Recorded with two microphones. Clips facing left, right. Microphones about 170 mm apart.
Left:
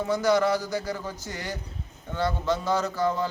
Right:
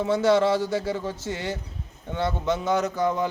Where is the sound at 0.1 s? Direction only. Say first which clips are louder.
Right 2 dB; 25° right (ahead or behind).